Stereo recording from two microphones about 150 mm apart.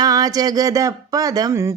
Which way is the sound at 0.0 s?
25° right (ahead or behind).